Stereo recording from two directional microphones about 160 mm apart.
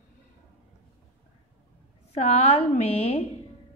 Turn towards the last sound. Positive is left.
turn(degrees=40)  # may be behind; listen again after turning